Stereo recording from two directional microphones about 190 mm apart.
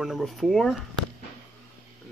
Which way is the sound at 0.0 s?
Centre (ahead or behind).